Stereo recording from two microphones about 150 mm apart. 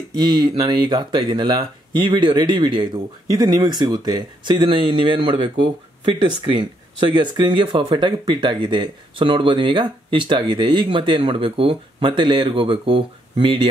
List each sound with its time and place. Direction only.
0.2 s speech: 30° right (ahead or behind)